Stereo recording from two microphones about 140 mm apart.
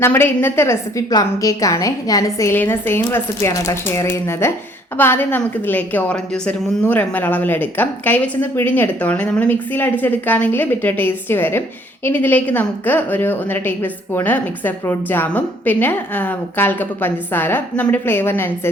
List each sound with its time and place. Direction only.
0.0 s a woman's voice: 15° left (ahead or behind)